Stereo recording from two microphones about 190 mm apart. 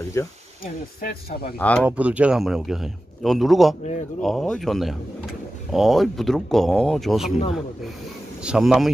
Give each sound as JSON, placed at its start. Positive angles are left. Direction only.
{"t": 0.2, "sound": "speech", "side_deg": 15}
{"t": 1.0, "sound": "speech", "side_deg": 55}
{"t": 1.6, "sound": "speech", "side_deg": 10}
{"t": 1.9, "sound": "a man's voice", "side_deg": -5}
{"t": 8.4, "sound": "a man's voice", "side_deg": -5}